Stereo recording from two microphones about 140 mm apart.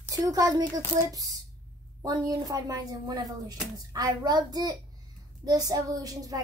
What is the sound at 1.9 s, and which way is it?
A child's voice, 25° right (ahead or behind).